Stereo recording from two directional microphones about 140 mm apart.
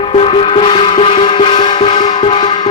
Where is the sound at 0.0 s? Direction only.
40° left (ahead or behind).